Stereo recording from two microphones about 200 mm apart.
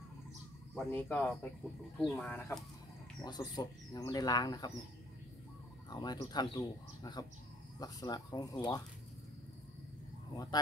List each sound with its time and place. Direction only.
0.7 s speech: centre (ahead or behind)
3.3 s speech: 20° left (ahead or behind)
5.9 s speech: 20° left (ahead or behind)
10.3 s speech: 20° left (ahead or behind)